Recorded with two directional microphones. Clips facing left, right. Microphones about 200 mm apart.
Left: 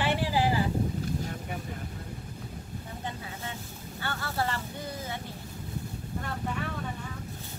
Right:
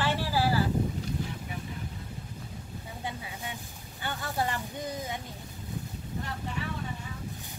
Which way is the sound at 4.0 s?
15° right (ahead or behind).